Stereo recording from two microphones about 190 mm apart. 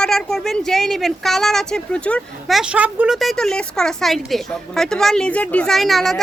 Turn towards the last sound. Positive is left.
turn(degrees=0)  # may be behind; listen again after turning